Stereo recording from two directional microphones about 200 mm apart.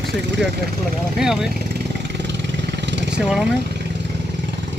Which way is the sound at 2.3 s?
60° right (ahead or behind).